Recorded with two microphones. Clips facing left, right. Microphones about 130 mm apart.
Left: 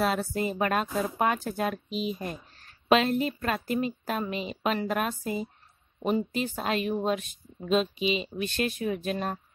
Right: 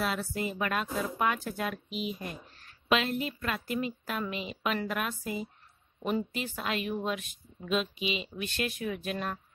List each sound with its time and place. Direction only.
0.0 s speech: 40° left (ahead or behind)